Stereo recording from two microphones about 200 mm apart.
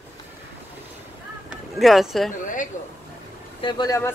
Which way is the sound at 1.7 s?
Centre (ahead or behind).